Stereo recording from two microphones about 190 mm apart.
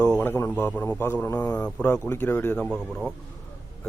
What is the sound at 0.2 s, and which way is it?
Speech, 10° left (ahead or behind).